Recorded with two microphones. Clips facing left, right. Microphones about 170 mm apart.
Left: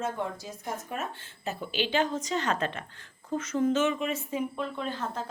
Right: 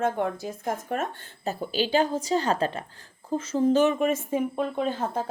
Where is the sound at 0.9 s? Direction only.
45° right (ahead or behind).